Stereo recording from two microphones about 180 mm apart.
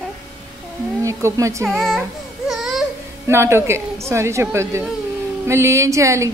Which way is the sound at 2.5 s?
Centre (ahead or behind).